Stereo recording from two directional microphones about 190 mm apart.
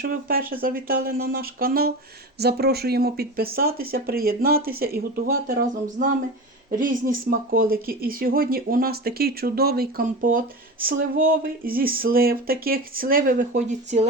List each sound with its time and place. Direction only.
0.0 s speech: 50° right (ahead or behind)